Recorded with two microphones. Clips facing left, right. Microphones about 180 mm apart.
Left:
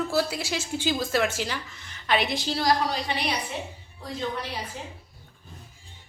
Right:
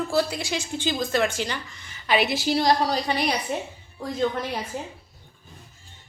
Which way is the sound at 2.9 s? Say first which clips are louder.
Right 4 dB; 40° right (ahead or behind).